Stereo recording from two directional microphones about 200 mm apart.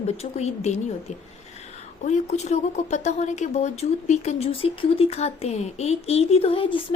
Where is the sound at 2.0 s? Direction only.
35° left (ahead or behind).